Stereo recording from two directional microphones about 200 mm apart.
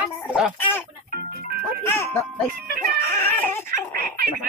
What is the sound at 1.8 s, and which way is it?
Music, 10° left (ahead or behind).